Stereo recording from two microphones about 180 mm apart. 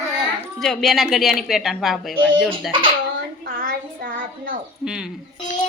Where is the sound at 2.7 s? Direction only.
30° right (ahead or behind).